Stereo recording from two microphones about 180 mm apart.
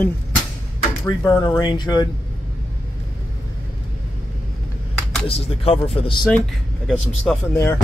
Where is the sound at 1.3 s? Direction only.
25° left (ahead or behind).